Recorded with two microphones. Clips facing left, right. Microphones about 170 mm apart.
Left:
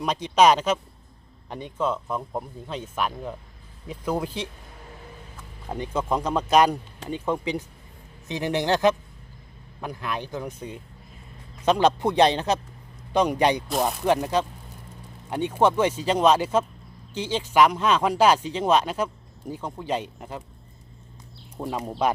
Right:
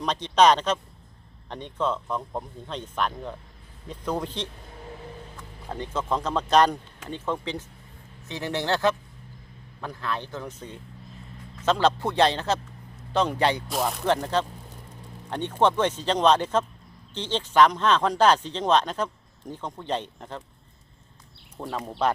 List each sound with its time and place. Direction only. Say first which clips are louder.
0.0 s speech: left 1 dB; 10° left (ahead or behind)
21.6 s speech: left 1 dB; 15° left (ahead or behind)